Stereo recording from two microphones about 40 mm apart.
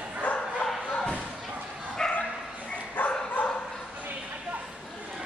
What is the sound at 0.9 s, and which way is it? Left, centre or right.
Slam, left.